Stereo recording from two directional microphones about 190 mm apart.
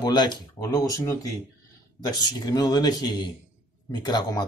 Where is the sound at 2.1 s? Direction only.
20° left (ahead or behind).